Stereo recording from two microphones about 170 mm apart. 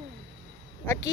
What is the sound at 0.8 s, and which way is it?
Speech, 15° left (ahead or behind).